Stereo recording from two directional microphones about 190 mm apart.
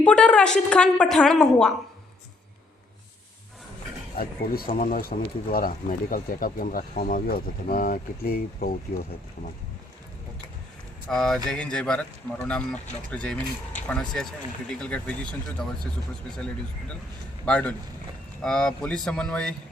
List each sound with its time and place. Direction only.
0.0 s a woman's voice: 5° left (ahead or behind)
4.2 s speech: 50° left (ahead or behind)
11.1 s a woman's voice: centre (ahead or behind)
17.4 s a woman's voice: 5° left (ahead or behind)